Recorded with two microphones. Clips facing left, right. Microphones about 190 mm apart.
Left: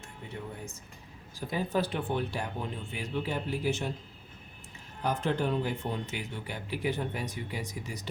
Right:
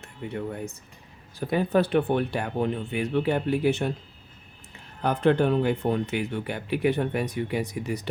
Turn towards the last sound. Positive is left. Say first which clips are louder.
# right 10 dB
turn(degrees=-65)  # may be behind; listen again after turning